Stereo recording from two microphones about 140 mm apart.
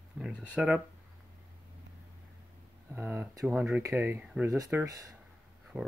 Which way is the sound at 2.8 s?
20° right (ahead or behind).